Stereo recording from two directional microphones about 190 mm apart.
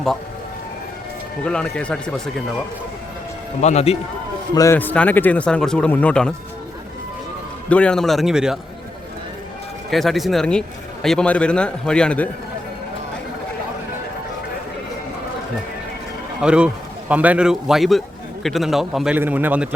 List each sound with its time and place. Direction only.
1.5 s a man's voice: 5° left (ahead or behind)
3.6 s a man's voice: 35° left (ahead or behind)
4.5 s speech: 15° left (ahead or behind)
7.7 s a man's voice: 5° left (ahead or behind)
9.9 s a man's voice: centre (ahead or behind)
16.4 s a man's voice: 5° right (ahead or behind)